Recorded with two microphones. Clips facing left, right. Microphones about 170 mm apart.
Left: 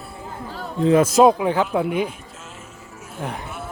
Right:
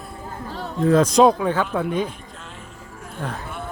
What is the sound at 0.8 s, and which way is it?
Speech, 20° left (ahead or behind).